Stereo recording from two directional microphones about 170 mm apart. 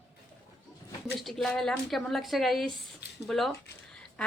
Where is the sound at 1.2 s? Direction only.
Centre (ahead or behind).